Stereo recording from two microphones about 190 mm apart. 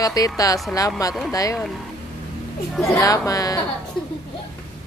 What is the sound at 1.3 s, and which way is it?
Speech, 20° left (ahead or behind).